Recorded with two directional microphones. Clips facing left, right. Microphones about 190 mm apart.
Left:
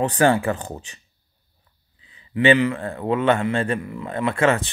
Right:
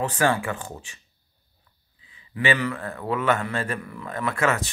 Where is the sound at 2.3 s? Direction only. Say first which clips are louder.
Left 7 dB; 25° left (ahead or behind).